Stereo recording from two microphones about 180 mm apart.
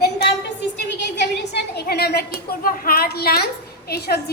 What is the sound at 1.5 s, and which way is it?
A woman's voice, 65° left (ahead or behind).